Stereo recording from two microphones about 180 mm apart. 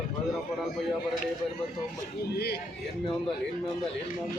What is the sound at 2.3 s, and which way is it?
Speech, 65° left (ahead or behind).